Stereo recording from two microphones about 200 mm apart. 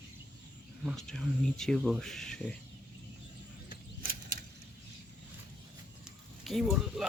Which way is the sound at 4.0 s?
50° right (ahead or behind).